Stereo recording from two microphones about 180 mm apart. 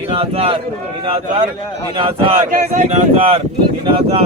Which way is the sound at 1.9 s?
30° right (ahead or behind).